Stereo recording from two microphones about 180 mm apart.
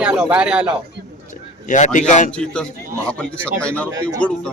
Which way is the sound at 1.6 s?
45° left (ahead or behind).